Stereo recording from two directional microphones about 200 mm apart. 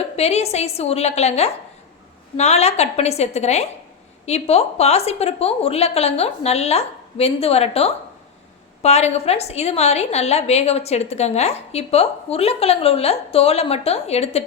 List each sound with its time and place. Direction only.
0.2 s a woman's voice: 30° left (ahead or behind)